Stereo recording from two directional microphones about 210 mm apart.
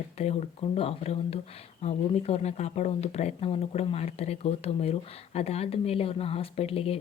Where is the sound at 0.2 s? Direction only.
30° left (ahead or behind).